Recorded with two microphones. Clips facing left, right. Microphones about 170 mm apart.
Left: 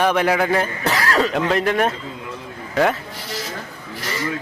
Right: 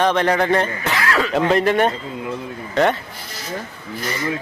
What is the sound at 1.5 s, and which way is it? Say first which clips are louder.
Speech: right 2 dB; centre (ahead or behind).